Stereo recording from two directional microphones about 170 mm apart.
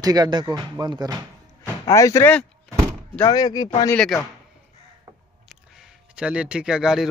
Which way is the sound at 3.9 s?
5° left (ahead or behind).